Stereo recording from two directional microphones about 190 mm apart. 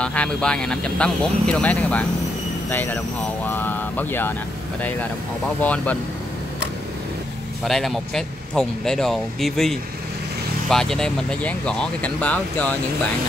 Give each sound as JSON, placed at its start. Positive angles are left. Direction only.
{"t": 0.0, "sound": "speech", "side_deg": 5}
{"t": 5.6, "sound": "speech", "side_deg": 5}
{"t": 7.6, "sound": "speech", "side_deg": 0}